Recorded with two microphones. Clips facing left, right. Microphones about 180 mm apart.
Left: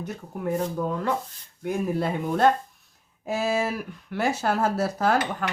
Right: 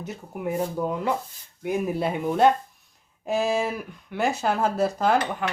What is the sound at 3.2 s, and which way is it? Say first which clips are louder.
Speech: right 1 dB; 5° left (ahead or behind).